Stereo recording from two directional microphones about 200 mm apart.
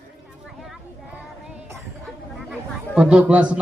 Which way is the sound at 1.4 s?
5° right (ahead or behind).